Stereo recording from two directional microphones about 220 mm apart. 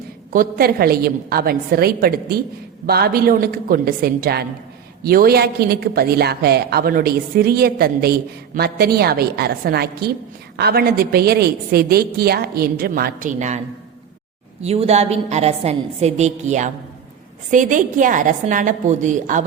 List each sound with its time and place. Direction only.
0.3 s a woman's voice: 40° right (ahead or behind)
14.6 s a woman's voice: 30° right (ahead or behind)